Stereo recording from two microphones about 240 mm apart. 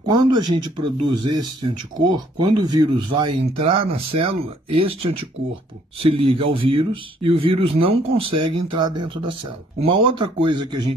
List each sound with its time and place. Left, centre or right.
0.0 s speech: centre